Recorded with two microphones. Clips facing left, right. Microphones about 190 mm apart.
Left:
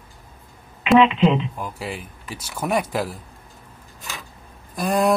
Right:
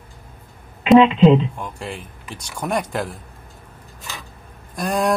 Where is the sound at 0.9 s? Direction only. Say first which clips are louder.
Right 4 dB; 35° right (ahead or behind).